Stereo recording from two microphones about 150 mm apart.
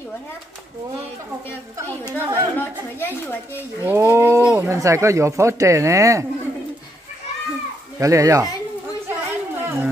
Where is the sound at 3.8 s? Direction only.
15° right (ahead or behind).